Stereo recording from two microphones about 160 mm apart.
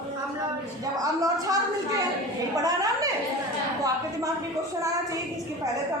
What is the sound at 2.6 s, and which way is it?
Speech, 25° right (ahead or behind).